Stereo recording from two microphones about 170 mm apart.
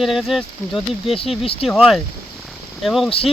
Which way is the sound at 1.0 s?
35° left (ahead or behind).